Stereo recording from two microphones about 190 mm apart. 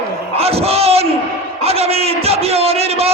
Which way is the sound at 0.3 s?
30° right (ahead or behind).